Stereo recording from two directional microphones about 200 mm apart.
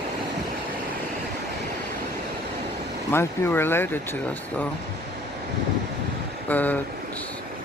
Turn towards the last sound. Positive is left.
turn(degrees=10)  # may be behind; listen again after turning